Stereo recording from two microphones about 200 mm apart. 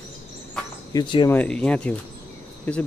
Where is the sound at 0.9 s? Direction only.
20° left (ahead or behind).